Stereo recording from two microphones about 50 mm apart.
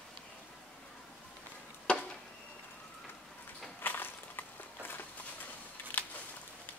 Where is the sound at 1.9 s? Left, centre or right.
Centre.